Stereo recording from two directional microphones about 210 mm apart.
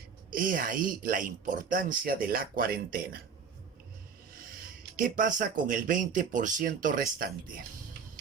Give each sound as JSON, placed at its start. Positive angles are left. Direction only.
{"t": 0.3, "sound": "a woman's voice", "side_deg": -40}
{"t": 4.9, "sound": "speech", "side_deg": -40}